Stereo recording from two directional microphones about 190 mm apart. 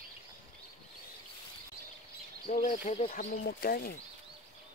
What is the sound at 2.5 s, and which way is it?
Speech, 50° left (ahead or behind).